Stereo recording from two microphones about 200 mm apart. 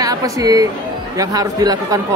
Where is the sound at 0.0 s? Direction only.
15° right (ahead or behind).